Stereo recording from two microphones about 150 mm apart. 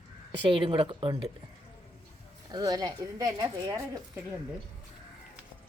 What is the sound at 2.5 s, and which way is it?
A woman's voice, 25° right (ahead or behind).